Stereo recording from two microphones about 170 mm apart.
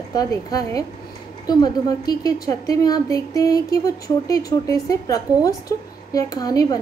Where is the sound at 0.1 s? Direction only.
20° left (ahead or behind).